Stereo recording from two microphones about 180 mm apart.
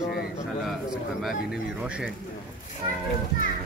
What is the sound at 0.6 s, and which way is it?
Speech, centre (ahead or behind).